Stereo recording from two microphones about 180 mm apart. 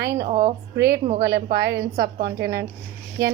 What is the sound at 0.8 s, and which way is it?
Speech, 15° right (ahead or behind).